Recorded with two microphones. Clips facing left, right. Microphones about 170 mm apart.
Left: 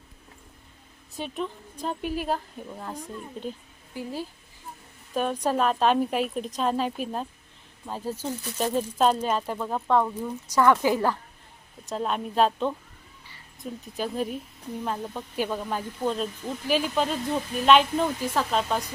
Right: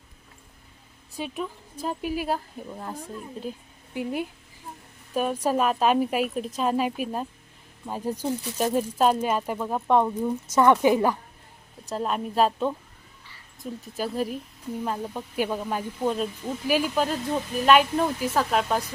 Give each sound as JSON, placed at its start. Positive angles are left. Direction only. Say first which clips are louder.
{"t": 1.1, "sound": "speech", "louder": "even", "side_deg": -5}
{"t": 3.9, "sound": "a woman's voice", "louder": "right 4 dB", "side_deg": -20}
{"t": 5.1, "sound": "speech", "louder": "right 1 dB", "side_deg": -10}
{"t": 11.9, "sound": "speech", "louder": "right 1 dB", "side_deg": -5}